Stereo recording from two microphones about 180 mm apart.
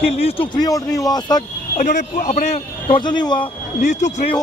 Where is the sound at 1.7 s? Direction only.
45° left (ahead or behind).